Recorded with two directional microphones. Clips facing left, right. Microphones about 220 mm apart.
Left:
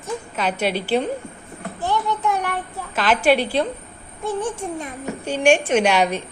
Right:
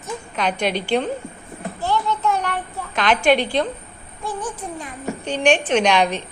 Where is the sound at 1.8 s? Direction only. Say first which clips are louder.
Even; 15° left (ahead or behind).